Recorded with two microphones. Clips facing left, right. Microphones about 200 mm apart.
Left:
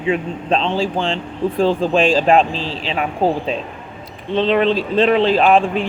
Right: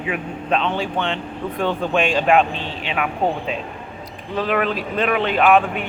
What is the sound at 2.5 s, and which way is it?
Speech, 90° left.